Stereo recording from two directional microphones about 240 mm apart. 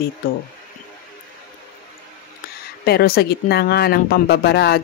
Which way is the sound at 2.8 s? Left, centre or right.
Left.